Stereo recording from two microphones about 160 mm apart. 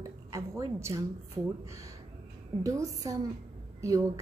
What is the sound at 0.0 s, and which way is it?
Speech, 20° right (ahead or behind).